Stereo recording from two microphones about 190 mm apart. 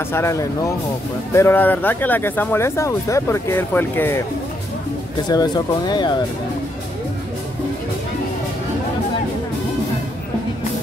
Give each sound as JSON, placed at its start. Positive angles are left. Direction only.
{"t": 0.1, "sound": "speech", "side_deg": 15}
{"t": 5.3, "sound": "speech", "side_deg": 20}